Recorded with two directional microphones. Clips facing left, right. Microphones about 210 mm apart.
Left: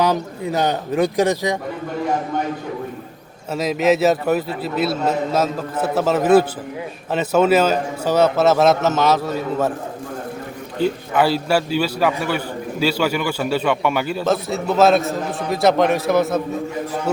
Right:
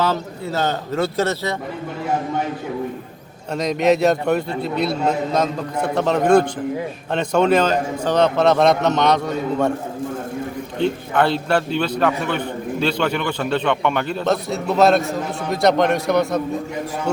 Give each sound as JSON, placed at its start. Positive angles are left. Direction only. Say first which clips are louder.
{"t": 0.0, "sound": "a man's voice", "louder": "left 2 dB", "side_deg": 15}
{"t": 3.5, "sound": "a man's voice", "louder": "even", "side_deg": 5}
{"t": 10.8, "sound": "a man's voice", "louder": "left 1 dB", "side_deg": 5}